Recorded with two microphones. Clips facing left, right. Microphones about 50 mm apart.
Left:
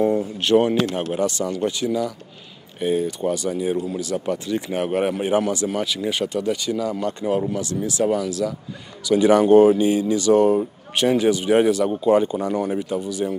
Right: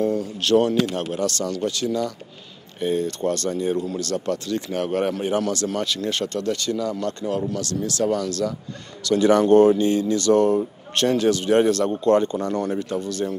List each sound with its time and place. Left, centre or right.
0.0 s speech: left